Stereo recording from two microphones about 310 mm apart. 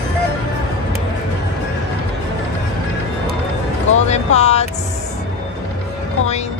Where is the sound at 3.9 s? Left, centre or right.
Left.